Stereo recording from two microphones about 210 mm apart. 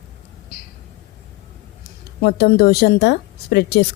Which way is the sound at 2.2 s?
50° left (ahead or behind).